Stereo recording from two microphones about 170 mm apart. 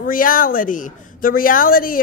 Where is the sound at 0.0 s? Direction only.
55° left (ahead or behind).